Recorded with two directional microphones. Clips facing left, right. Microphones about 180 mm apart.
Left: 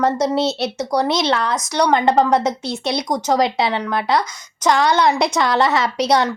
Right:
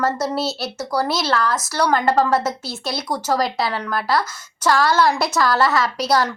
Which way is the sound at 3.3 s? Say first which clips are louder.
Left 4 dB; 20° left (ahead or behind).